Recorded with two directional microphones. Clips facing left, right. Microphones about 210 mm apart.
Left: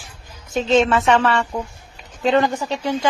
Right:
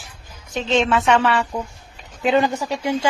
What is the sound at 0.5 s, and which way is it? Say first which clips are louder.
Speech: left 4 dB; 40° left (ahead or behind).